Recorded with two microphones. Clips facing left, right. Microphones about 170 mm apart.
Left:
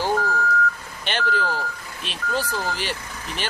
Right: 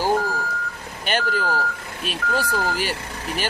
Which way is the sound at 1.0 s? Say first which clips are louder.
Right 1 dB; 45° right (ahead or behind).